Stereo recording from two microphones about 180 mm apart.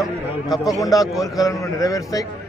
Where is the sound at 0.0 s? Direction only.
Centre (ahead or behind).